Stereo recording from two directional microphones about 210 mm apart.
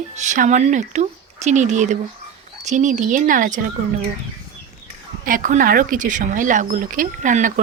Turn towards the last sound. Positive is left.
turn(degrees=-40)  # may be behind; listen again after turning